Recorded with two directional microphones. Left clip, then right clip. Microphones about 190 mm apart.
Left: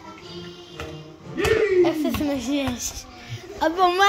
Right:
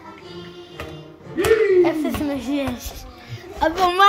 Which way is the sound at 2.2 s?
20° left (ahead or behind).